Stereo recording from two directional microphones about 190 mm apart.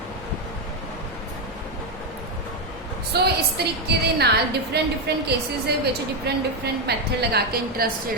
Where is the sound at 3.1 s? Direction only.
60° right (ahead or behind).